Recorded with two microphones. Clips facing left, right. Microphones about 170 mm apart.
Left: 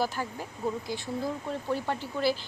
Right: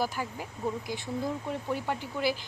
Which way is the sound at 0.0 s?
10° right (ahead or behind).